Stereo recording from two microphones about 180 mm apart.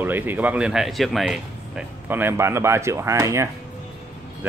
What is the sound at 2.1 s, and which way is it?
Speech, 10° right (ahead or behind).